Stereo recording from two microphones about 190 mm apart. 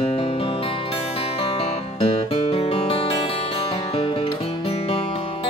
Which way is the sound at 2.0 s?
30° left (ahead or behind).